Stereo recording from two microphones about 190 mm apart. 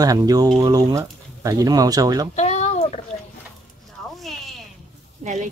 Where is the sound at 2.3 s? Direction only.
35° left (ahead or behind).